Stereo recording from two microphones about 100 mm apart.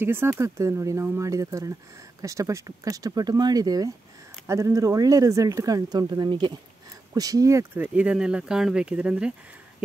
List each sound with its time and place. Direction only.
0.0 s speech: 25° right (ahead or behind); by 6.6 s 50° right (ahead or behind)
7.2 s speech: 35° right (ahead or behind)
7.8 s speech: 10° right (ahead or behind)